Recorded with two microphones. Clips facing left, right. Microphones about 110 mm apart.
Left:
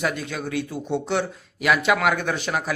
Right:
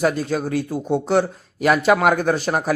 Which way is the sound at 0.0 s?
40° right (ahead or behind).